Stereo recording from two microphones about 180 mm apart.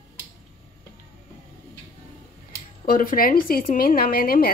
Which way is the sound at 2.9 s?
50° left (ahead or behind).